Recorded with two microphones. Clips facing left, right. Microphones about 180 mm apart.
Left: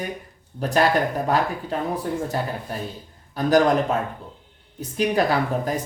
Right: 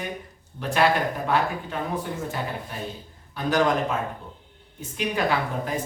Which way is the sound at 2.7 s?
40° left (ahead or behind).